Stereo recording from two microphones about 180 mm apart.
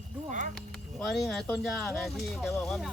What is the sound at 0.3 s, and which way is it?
Speech, 45° right (ahead or behind).